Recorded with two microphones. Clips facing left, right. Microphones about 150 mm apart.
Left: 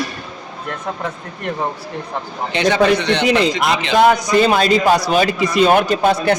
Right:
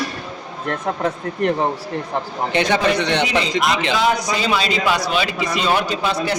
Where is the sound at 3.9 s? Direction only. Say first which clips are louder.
Left 6 dB; 55° left (ahead or behind).